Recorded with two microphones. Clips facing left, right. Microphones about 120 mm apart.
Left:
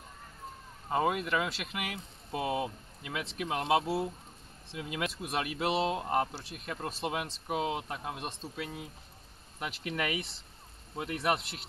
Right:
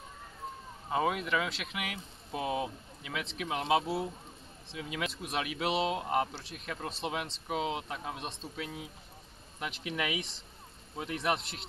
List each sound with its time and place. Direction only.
0.8 s speech: centre (ahead or behind)